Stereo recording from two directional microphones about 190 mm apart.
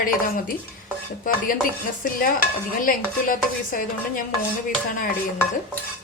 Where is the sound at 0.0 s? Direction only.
45° left (ahead or behind).